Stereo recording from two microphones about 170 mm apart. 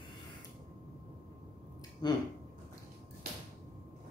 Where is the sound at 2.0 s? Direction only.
25° left (ahead or behind).